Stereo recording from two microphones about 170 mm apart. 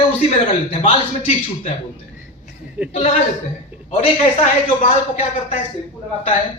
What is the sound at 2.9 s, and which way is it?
A man's voice, 40° left (ahead or behind).